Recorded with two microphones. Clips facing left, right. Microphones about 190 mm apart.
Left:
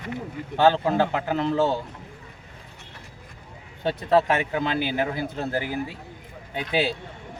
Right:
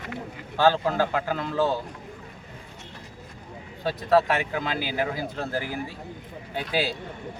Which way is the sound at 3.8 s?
25° left (ahead or behind).